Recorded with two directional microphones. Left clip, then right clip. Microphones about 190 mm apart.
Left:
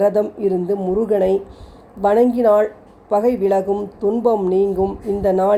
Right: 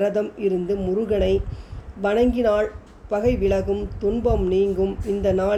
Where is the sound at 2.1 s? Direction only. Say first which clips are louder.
Left 5 dB; 45° left (ahead or behind).